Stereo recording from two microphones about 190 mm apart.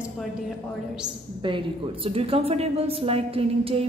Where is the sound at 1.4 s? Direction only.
25° right (ahead or behind).